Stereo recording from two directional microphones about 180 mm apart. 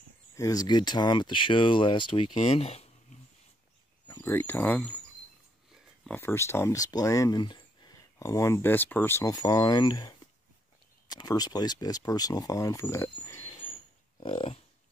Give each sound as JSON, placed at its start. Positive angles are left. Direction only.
{"t": 0.4, "sound": "speech", "side_deg": 20}
{"t": 4.1, "sound": "speech", "side_deg": 15}
{"t": 6.0, "sound": "speech", "side_deg": 10}
{"t": 13.5, "sound": "a sound", "side_deg": 30}
{"t": 14.2, "sound": "speech", "side_deg": 30}